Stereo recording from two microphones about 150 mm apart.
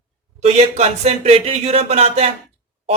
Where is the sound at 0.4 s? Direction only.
45° right (ahead or behind).